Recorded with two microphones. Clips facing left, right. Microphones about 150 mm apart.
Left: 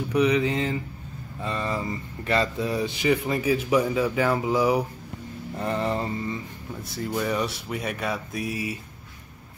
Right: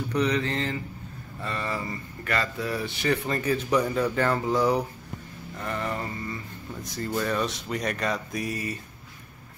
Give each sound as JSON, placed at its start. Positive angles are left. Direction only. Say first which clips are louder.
{"t": 0.1, "sound": "speech", "louder": "left 4 dB", "side_deg": 10}
{"t": 5.6, "sound": "mantra", "louder": "left 5 dB", "side_deg": 30}
{"t": 6.8, "sound": "speech", "louder": "left 1 dB", "side_deg": 10}